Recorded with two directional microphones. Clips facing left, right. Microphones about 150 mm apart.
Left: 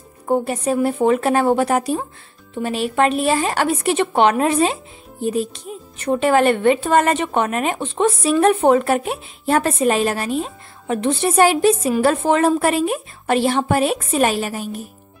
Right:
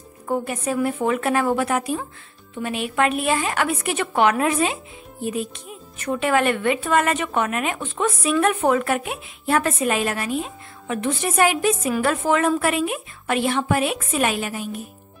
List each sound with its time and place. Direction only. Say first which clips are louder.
0.3 s speech: left 5 dB; 30° left (ahead or behind)